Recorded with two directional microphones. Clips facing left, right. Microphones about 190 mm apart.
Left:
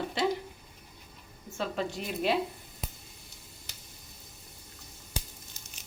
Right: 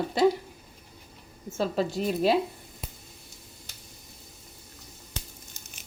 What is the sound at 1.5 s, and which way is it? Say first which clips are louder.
Speech: right 6 dB; 35° right (ahead or behind).